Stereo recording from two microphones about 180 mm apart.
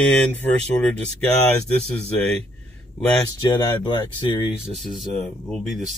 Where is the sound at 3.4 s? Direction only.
25° left (ahead or behind).